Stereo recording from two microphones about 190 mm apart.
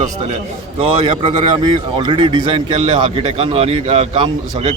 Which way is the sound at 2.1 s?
25° right (ahead or behind).